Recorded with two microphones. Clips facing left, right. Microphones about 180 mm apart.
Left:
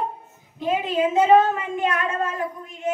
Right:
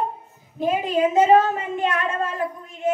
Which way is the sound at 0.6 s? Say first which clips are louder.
Right 2 dB; 45° right (ahead or behind).